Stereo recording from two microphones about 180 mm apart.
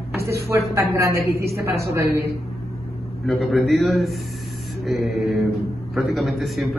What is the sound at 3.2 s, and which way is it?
A man's voice, centre (ahead or behind).